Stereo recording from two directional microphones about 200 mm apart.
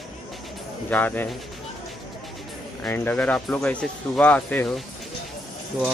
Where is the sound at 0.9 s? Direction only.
10° left (ahead or behind).